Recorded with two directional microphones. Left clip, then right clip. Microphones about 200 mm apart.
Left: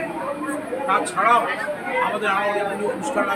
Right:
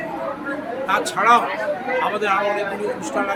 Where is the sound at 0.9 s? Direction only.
40° right (ahead or behind).